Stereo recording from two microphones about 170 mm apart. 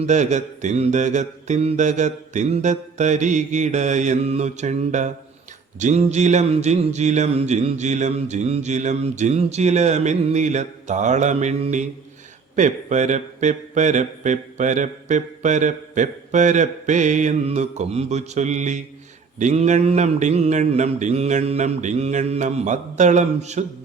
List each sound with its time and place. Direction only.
0.0 s speech: 45° right (ahead or behind)